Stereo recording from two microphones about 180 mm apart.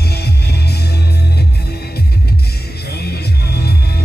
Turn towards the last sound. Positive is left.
turn(degrees=60)  # may be behind; listen again after turning